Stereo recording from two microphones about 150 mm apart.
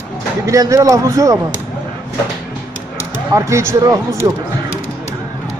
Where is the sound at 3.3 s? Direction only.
20° right (ahead or behind).